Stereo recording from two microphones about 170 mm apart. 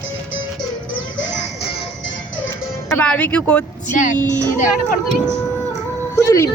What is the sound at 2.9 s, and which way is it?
Speech, 10° left (ahead or behind).